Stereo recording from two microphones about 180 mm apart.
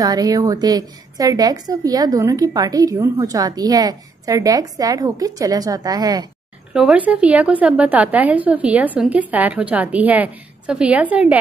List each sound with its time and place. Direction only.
0.0 s a woman's voice: 20° right (ahead or behind)
6.7 s a woman's voice: 5° right (ahead or behind)